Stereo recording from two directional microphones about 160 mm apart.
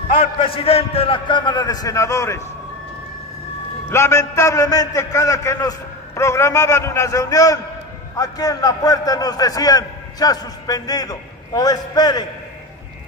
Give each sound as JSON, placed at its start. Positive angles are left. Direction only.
{"t": 0.4, "sound": "a man's voice", "side_deg": 35}
{"t": 3.9, "sound": "a man's voice", "side_deg": 15}